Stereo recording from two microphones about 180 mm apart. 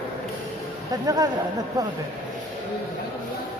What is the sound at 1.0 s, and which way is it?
Speech, 20° right (ahead or behind).